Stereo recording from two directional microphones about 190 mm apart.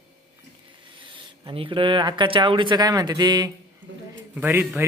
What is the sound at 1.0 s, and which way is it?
Speech, 25° right (ahead or behind).